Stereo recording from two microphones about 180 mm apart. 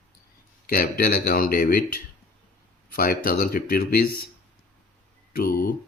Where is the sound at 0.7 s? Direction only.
55° left (ahead or behind).